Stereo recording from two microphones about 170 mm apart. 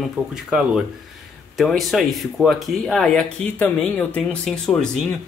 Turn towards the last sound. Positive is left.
turn(degrees=5)  # may be behind; listen again after turning